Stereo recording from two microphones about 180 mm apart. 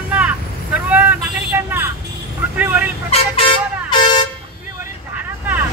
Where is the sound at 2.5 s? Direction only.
10° right (ahead or behind).